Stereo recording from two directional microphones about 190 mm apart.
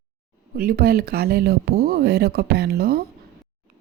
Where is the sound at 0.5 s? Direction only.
50° right (ahead or behind).